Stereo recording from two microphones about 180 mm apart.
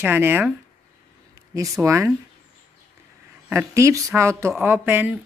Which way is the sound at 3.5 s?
15° right (ahead or behind).